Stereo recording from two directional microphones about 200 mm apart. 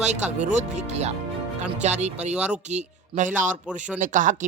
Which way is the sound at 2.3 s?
5° right (ahead or behind).